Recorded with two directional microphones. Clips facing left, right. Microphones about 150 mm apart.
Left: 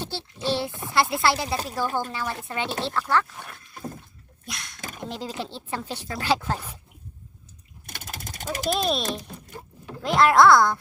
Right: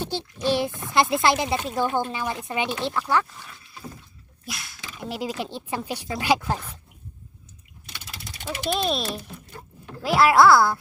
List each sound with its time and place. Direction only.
0.0 s a sound: 15° right (ahead or behind)
0.4 s speech: 15° right (ahead or behind)
0.7 s speech: 20° left (ahead or behind)
1.1 s speech: 20° right (ahead or behind)
3.3 s rowboat: 55° left (ahead or behind)
4.4 s dog: 5° right (ahead or behind)
4.8 s dog: 45° left (ahead or behind)
5.0 s speech: 10° right (ahead or behind)
7.9 s pulleys: 50° left (ahead or behind)
8.8 s speech: centre (ahead or behind)